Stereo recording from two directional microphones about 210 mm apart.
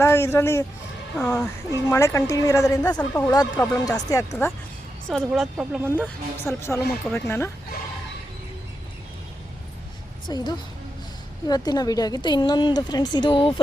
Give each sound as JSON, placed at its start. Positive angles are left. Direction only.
{"t": 0.0, "sound": "speech", "side_deg": 10}
{"t": 5.2, "sound": "speech", "side_deg": -5}
{"t": 6.0, "sound": "speech", "side_deg": 10}
{"t": 10.2, "sound": "a woman's voice", "side_deg": 20}